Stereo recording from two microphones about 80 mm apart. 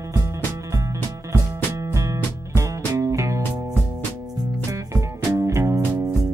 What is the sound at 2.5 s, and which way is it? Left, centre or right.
Music, right.